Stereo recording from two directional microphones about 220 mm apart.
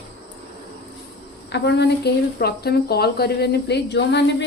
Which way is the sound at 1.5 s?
50° left (ahead or behind).